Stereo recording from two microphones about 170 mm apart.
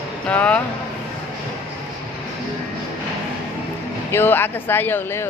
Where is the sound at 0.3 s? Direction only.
5° left (ahead or behind).